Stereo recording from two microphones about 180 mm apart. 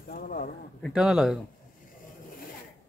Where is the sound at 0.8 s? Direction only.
5° right (ahead or behind).